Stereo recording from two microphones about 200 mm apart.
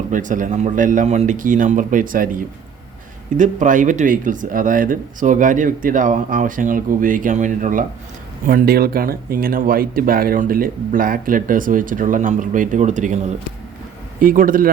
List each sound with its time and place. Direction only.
0.1 s speech: 40° right (ahead or behind)
14.2 s speech: 45° right (ahead or behind)